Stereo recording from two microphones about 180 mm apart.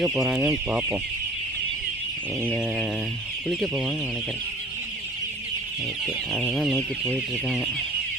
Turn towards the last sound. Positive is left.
turn(degrees=5)  # may be behind; listen again after turning